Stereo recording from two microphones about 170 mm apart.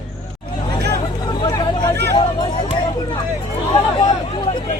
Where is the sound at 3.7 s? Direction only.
25° left (ahead or behind).